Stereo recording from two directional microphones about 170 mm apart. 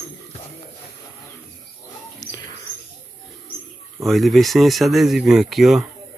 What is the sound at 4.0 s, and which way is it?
Speech, centre (ahead or behind).